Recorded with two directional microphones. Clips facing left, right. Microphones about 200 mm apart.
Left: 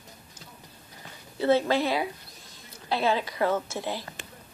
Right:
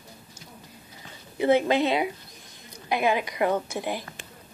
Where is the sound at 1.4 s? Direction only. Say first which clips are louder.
Right 2 dB; 15° right (ahead or behind).